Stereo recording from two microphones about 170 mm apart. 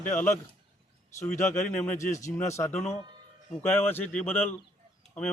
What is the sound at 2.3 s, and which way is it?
Speech, 15° left (ahead or behind).